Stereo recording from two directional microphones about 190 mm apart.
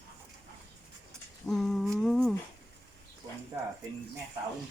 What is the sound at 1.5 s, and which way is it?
Humming, centre (ahead or behind).